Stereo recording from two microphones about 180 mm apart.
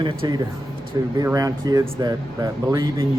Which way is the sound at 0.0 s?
25° right (ahead or behind).